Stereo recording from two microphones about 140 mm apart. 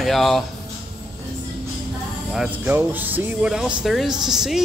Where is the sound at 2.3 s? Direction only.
10° right (ahead or behind).